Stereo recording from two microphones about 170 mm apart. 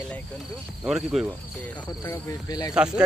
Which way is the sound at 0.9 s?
Centre (ahead or behind).